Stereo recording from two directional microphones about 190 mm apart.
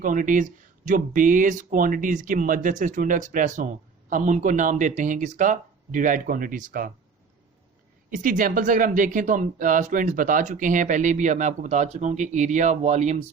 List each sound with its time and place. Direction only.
0.0 s speech: 45° right (ahead or behind)
8.1 s speech: 45° right (ahead or behind)